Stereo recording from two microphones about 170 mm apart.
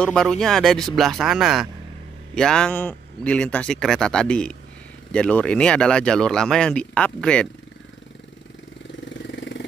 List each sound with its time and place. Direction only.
0.0 s speech: 5° left (ahead or behind)
9.1 s vehicle: 90° left